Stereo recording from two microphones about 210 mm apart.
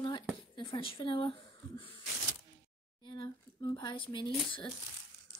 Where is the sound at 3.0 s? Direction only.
20° left (ahead or behind).